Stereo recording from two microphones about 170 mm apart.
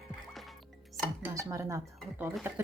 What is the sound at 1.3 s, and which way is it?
Speech, 20° right (ahead or behind).